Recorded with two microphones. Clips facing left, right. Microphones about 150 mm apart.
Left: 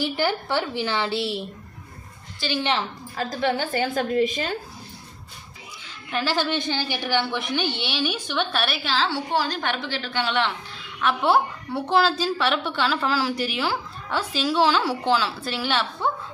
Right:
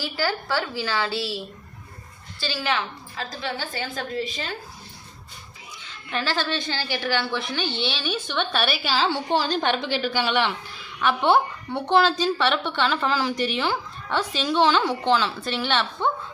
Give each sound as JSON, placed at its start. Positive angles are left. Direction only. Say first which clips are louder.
{"t": 0.0, "sound": "a woman's voice", "louder": "left 3 dB", "side_deg": 20}
{"t": 2.4, "sound": "a woman's voice", "louder": "left 2 dB", "side_deg": 20}
{"t": 3.2, "sound": "a woman's voice", "louder": "left 7 dB", "side_deg": 55}
{"t": 6.1, "sound": "a woman's voice", "louder": "left 2 dB", "side_deg": 10}
{"t": 8.5, "sound": "a woman's voice", "louder": "right 1 dB", "side_deg": 0}
{"t": 9.3, "sound": "a woman's voice", "louder": "right 2 dB", "side_deg": -25}
{"t": 10.1, "sound": "a man's voice", "louder": "even", "side_deg": -5}